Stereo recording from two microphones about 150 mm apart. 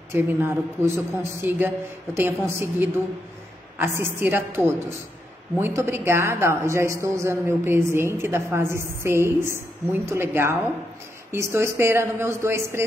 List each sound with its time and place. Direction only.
0.1 s a man's voice: 15° right (ahead or behind)